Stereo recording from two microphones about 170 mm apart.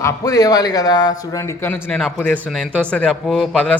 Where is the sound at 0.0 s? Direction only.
20° left (ahead or behind).